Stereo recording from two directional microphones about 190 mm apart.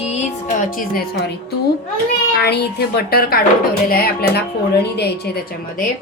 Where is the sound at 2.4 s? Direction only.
60° left (ahead or behind).